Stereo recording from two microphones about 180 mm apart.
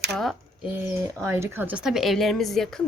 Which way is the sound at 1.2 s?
10° right (ahead or behind).